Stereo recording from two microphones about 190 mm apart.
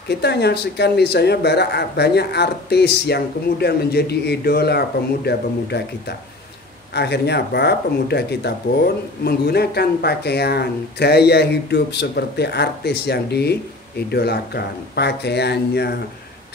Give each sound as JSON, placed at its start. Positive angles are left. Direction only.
{"t": 0.1, "sound": "speech", "side_deg": 60}